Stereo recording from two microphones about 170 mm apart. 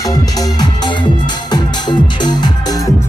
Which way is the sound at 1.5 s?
25° left (ahead or behind).